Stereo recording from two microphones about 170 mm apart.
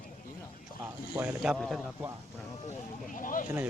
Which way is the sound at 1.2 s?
5° right (ahead or behind).